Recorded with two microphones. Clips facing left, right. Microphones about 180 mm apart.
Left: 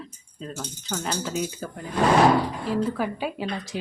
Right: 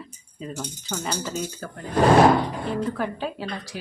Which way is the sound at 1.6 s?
15° left (ahead or behind).